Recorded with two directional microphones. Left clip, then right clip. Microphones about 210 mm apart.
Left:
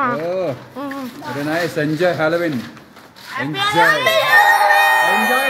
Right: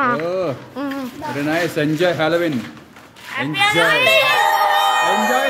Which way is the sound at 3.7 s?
10° left (ahead or behind).